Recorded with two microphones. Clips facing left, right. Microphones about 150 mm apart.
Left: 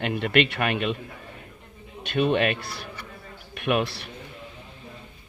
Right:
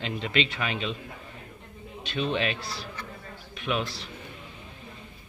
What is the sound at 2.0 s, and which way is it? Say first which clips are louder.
A man's voice: left 6 dB; 55° left (ahead or behind).